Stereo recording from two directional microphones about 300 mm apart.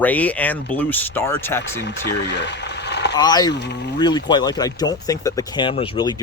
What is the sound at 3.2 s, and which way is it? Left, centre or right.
Speech, centre.